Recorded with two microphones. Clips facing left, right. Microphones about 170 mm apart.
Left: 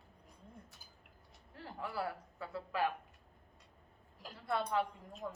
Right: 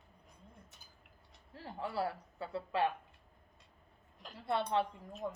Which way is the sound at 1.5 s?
25° right (ahead or behind).